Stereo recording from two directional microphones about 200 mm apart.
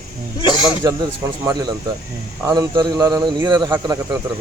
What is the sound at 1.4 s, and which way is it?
Speech, 20° right (ahead or behind).